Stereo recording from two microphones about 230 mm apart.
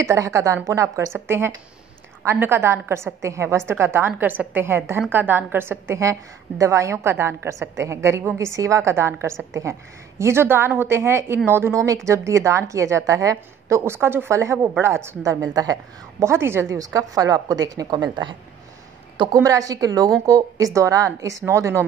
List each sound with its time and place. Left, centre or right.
0.0 s a woman's voice: centre